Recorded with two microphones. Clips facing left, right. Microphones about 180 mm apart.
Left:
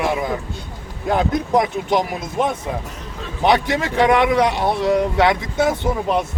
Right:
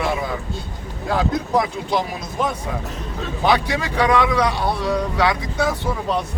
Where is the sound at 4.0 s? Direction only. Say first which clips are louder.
Left 3 dB; 25° left (ahead or behind).